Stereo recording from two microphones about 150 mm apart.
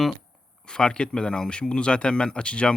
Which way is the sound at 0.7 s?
5° left (ahead or behind).